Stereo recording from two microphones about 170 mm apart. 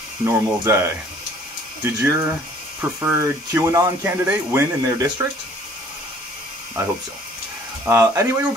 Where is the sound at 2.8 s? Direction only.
15° right (ahead or behind).